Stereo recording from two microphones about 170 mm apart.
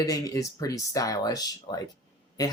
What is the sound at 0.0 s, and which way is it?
Speech, 20° left (ahead or behind).